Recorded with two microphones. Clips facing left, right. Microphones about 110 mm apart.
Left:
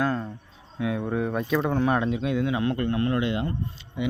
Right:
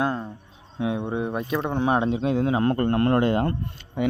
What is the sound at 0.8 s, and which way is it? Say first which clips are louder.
Speech: right 1 dB; 25° right (ahead or behind).